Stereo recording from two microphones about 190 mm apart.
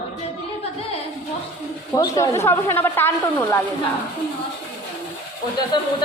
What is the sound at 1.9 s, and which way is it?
Speech, 15° left (ahead or behind).